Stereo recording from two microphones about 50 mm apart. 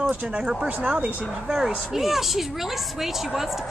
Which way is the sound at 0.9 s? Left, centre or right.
Centre.